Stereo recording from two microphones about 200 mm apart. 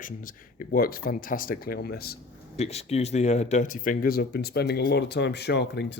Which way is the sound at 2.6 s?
30° left (ahead or behind).